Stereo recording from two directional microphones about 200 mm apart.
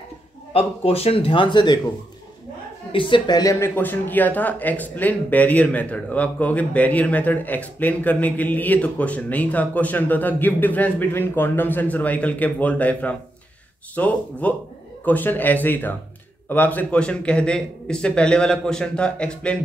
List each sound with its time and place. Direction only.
0.5 s a man's voice: 30° left (ahead or behind)
2.9 s a man's voice: 25° left (ahead or behind); by 19.6 s 5° left (ahead or behind)